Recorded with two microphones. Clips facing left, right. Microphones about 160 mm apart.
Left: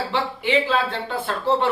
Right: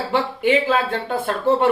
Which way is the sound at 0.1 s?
50° right (ahead or behind).